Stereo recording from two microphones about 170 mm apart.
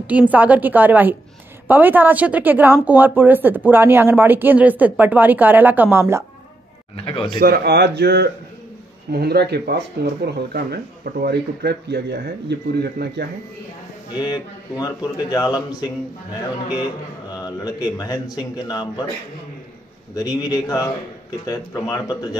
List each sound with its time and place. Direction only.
0.0 s speech: 10° right (ahead or behind)
7.1 s a man's voice: 30° left (ahead or behind)
7.3 s speech: 60° right (ahead or behind)
14.1 s a man's voice: 25° left (ahead or behind)
17.4 s a man's voice: 20° left (ahead or behind)
20.2 s a man's voice: 20° left (ahead or behind)